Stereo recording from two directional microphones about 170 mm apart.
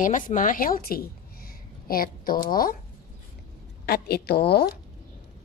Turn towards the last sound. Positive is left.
turn(degrees=70)  # may be behind; listen again after turning